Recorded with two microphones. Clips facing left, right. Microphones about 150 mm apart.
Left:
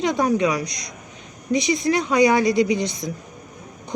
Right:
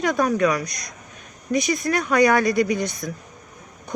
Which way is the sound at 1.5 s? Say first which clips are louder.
Left 2 dB; 20° left (ahead or behind).